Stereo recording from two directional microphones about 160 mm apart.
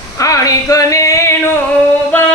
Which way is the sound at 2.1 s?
10° left (ahead or behind).